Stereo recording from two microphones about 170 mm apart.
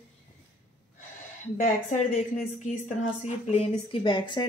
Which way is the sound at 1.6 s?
45° left (ahead or behind).